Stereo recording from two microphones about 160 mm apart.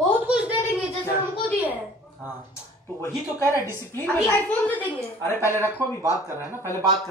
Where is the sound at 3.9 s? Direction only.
10° left (ahead or behind).